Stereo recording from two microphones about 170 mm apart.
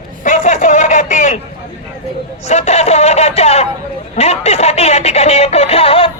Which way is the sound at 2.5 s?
40° left (ahead or behind).